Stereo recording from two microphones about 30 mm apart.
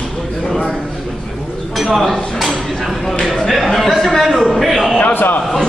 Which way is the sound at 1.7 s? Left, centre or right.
Centre.